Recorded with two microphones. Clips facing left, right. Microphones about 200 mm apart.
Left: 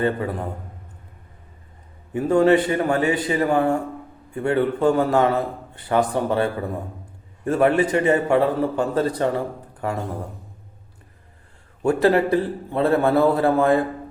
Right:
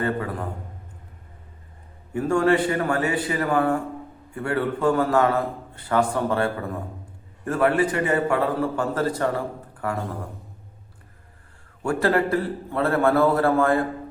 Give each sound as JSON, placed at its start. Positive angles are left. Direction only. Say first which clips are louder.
{"t": 0.0, "sound": "a man's voice", "louder": "left 3 dB", "side_deg": 20}
{"t": 2.1, "sound": "a man's voice", "louder": "left 4 dB", "side_deg": 20}
{"t": 11.8, "sound": "a man's voice", "louder": "left 4 dB", "side_deg": 20}